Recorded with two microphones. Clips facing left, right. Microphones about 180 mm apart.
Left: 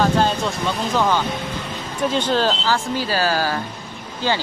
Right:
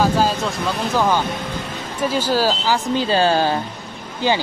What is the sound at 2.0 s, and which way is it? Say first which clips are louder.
Speech: right 1 dB; 5° right (ahead or behind).